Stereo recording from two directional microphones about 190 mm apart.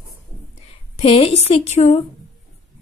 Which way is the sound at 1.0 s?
30° left (ahead or behind).